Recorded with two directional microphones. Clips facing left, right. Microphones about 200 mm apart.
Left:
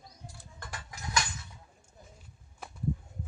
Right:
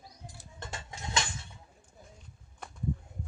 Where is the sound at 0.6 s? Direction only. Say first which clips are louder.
Right 1 dB; 25° right (ahead or behind).